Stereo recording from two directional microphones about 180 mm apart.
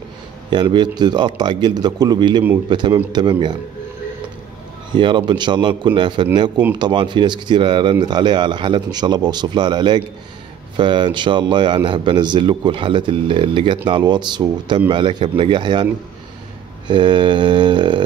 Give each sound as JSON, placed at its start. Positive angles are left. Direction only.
{"t": 0.5, "sound": "speech", "side_deg": -25}
{"t": 4.9, "sound": "speech", "side_deg": -25}